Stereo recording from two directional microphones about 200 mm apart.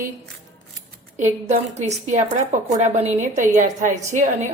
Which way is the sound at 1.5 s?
35° right (ahead or behind).